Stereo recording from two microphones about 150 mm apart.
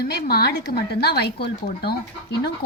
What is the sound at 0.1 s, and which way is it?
Speech, 90° left.